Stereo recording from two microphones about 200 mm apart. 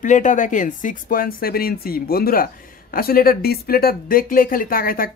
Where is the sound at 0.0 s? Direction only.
40° left (ahead or behind).